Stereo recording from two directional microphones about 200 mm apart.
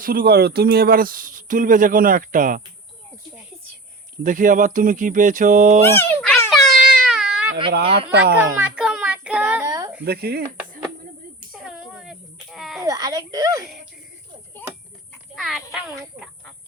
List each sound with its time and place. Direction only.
0.0 s speech: 45° right (ahead or behind)
4.2 s speech: 40° right (ahead or behind)
5.8 s a sound: 10° left (ahead or behind)
6.5 s baby cry: centre (ahead or behind)
7.9 s speech: 55° right (ahead or behind)
8.5 s child singing: 5° right (ahead or behind)
9.6 s a sound: 15° right (ahead or behind)
10.0 s speech: 50° right (ahead or behind)
11.5 s a sound: centre (ahead or behind)
12.8 s music: 15° right (ahead or behind)
15.4 s a child's voice: centre (ahead or behind)